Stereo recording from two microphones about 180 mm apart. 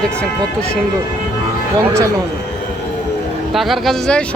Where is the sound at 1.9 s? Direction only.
15° right (ahead or behind).